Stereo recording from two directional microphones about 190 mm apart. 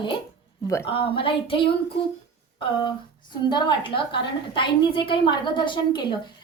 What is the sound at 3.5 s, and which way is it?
A woman's voice, 25° left (ahead or behind).